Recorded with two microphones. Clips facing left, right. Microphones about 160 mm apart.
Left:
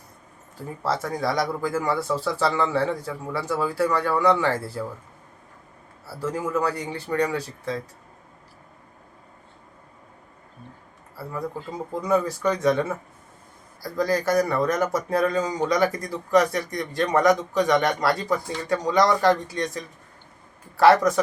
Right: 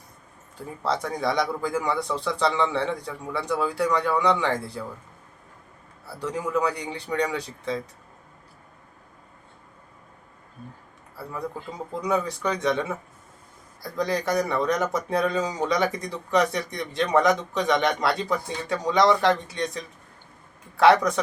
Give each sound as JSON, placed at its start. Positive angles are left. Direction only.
{"t": 0.8, "sound": "speech", "side_deg": 5}
{"t": 6.1, "sound": "speech", "side_deg": 0}
{"t": 11.9, "sound": "speech", "side_deg": 0}
{"t": 13.8, "sound": "speech", "side_deg": 0}